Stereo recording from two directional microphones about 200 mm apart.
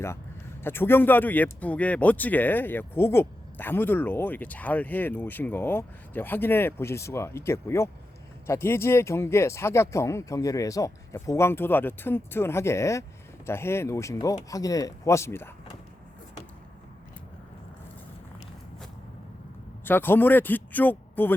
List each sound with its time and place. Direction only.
0.6 s speech: 10° left (ahead or behind)
19.8 s speech: 10° left (ahead or behind)